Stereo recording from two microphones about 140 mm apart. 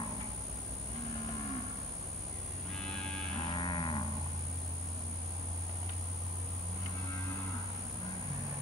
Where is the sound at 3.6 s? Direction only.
35° left (ahead or behind).